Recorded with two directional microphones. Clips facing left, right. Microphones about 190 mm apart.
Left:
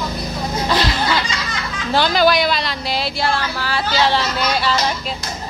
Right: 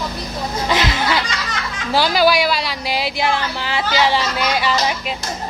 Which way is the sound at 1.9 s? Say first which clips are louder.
Even; 10° right (ahead or behind).